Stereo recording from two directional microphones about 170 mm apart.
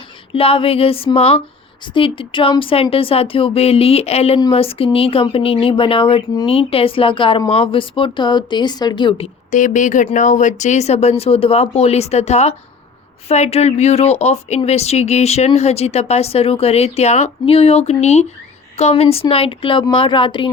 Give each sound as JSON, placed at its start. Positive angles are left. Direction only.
{"t": 0.3, "sound": "speech", "side_deg": 35}